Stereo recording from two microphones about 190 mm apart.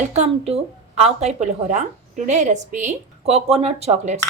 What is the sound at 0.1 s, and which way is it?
Speech, 35° right (ahead or behind).